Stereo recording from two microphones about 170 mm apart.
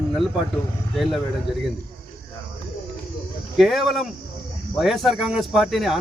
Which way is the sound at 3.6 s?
Centre (ahead or behind).